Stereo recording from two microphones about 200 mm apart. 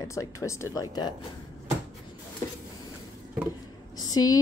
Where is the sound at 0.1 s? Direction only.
15° left (ahead or behind).